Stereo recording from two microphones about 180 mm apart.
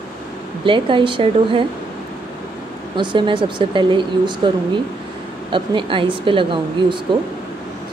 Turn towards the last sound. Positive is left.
turn(degrees=-25)  # may be behind; listen again after turning